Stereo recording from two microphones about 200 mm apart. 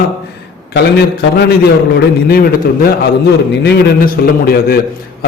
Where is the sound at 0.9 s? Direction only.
55° left (ahead or behind).